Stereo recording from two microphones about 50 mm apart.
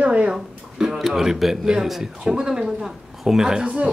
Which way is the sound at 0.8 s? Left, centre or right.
Centre.